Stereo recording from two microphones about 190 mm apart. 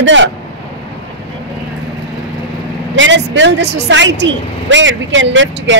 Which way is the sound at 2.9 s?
75° right (ahead or behind).